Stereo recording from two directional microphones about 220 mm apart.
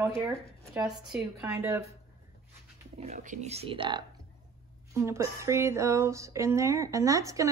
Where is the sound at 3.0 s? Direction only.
35° right (ahead or behind).